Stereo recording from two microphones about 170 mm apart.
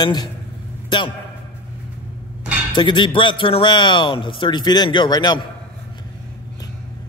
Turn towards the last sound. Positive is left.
turn(degrees=25)  # may be behind; listen again after turning